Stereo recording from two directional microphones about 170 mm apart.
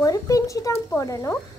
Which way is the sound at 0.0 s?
20° left (ahead or behind).